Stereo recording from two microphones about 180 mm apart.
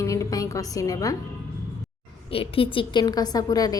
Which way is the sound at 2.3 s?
30° left (ahead or behind).